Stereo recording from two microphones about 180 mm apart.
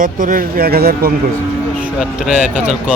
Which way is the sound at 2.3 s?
10° right (ahead or behind).